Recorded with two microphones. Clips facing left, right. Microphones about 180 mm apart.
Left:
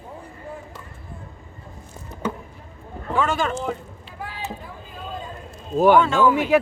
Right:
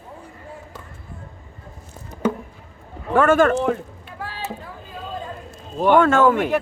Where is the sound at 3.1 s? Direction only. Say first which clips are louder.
Right 7 dB; 55° right (ahead or behind).